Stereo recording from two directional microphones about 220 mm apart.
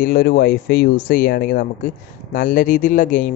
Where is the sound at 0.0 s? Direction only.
45° left (ahead or behind).